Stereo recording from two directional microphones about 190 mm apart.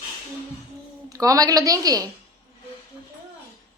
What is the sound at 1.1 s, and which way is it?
Speech, 15° right (ahead or behind).